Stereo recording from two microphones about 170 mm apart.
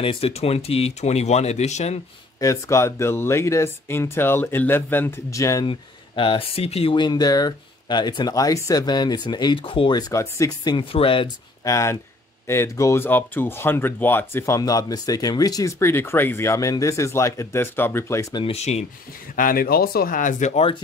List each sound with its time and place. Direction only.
0.0 s speech: 35° left (ahead or behind)
2.4 s speech: 15° left (ahead or behind)
5.7 s speech: 30° left (ahead or behind)
11.7 s speech: 15° left (ahead or behind)
18.4 s speech: 40° left (ahead or behind)
19.3 s speech: 55° left (ahead or behind)